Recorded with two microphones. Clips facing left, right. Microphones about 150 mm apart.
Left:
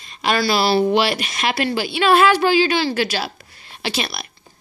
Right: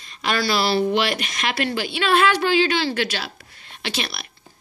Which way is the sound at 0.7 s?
30° left (ahead or behind).